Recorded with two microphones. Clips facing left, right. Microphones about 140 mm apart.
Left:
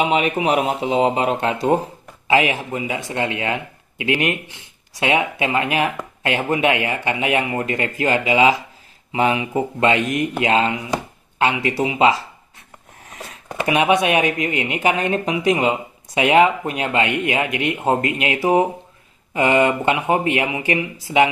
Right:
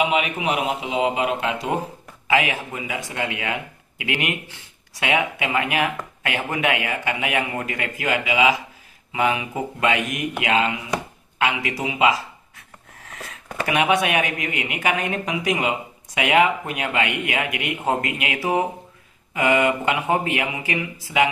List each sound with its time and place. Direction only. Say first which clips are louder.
0.0 s speech: left 3 dB; 35° left (ahead or behind)
2.2 s speech: left 4 dB; 20° left (ahead or behind)